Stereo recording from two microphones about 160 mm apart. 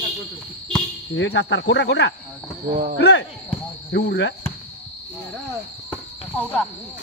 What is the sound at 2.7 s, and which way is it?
Speech, 60° right (ahead or behind).